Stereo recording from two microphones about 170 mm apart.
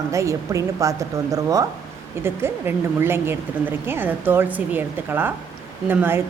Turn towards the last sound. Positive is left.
turn(degrees=-10)  # may be behind; listen again after turning